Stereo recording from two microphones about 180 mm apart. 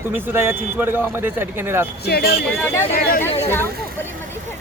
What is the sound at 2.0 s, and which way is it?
Speech, 60° left (ahead or behind).